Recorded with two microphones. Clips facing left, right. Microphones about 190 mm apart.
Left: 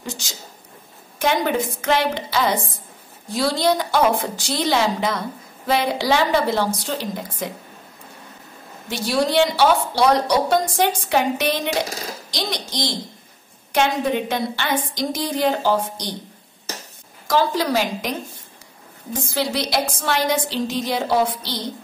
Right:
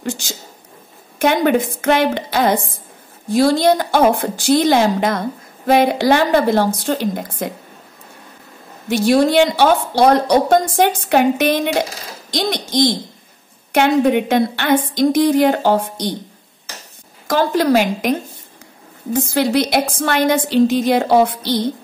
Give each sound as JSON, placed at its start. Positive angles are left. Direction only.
{"t": 0.0, "sound": "a sound", "side_deg": -55}
{"t": 1.2, "sound": "a woman's voice", "side_deg": -55}
{"t": 8.8, "sound": "a woman's voice", "side_deg": -55}
{"t": 17.3, "sound": "a woman's voice", "side_deg": -55}
{"t": 19.1, "sound": "a woman's voice", "side_deg": -55}